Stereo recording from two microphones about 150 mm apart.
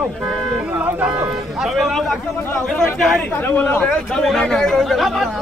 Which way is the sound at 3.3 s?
15° left (ahead or behind).